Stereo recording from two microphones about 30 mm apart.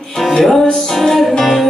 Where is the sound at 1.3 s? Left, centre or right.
Centre.